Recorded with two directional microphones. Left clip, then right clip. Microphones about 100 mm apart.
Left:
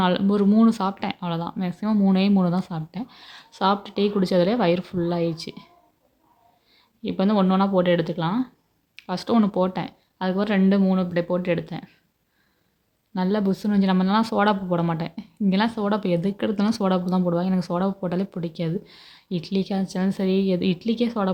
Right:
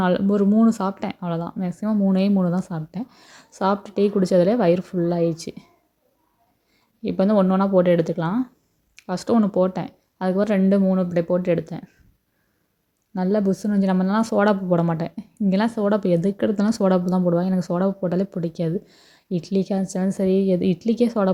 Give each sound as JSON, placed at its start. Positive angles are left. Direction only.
{"t": 0.0, "sound": "speech", "side_deg": -30}
{"t": 7.0, "sound": "speech", "side_deg": -45}
{"t": 9.4, "sound": "speech", "side_deg": -30}
{"t": 13.1, "sound": "speech", "side_deg": -30}